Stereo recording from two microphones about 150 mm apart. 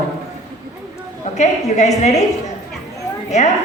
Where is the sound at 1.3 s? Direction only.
50° left (ahead or behind).